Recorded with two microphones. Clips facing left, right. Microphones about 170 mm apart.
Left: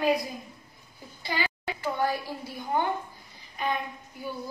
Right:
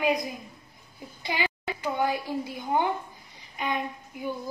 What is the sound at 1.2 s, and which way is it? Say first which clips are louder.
A woman's voice: right 1 dB; 15° right (ahead or behind).